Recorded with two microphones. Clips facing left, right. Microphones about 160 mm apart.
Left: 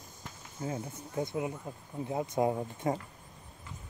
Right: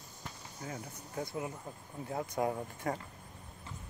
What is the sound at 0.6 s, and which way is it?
Speech, 25° left (ahead or behind).